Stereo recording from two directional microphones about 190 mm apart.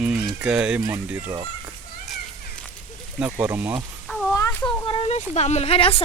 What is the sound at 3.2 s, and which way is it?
Speech, 10° right (ahead or behind).